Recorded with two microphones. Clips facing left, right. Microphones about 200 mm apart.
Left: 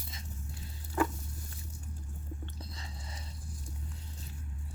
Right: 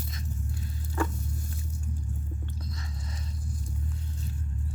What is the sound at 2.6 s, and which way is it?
Chewing, 30° left (ahead or behind).